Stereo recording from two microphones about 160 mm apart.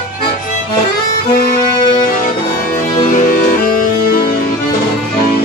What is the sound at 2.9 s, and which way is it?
Music, 55° left (ahead or behind).